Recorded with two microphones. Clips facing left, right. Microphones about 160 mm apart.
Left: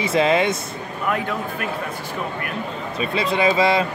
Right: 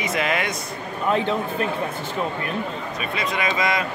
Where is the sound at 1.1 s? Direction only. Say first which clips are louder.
Right 3 dB; 25° right (ahead or behind).